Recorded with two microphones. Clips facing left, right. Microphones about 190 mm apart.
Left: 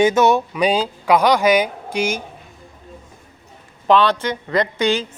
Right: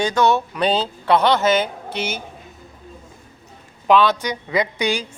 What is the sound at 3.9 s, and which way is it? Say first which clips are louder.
Speech: left 1 dB; 5° right (ahead or behind).